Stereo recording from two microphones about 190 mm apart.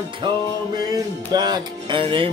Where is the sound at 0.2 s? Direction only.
25° right (ahead or behind).